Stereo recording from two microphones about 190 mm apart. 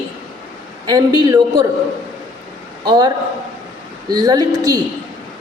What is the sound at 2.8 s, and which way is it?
Speech, 20° right (ahead or behind).